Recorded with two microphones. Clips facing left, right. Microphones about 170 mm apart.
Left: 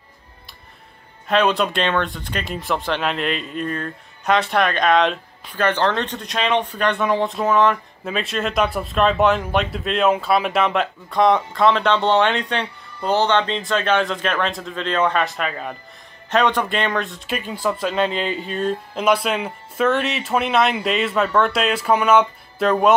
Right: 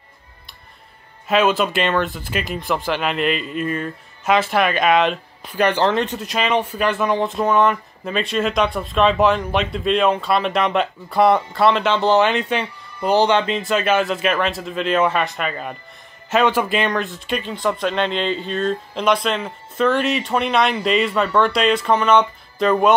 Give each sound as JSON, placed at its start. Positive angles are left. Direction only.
{"t": 1.2, "sound": "speech", "side_deg": -5}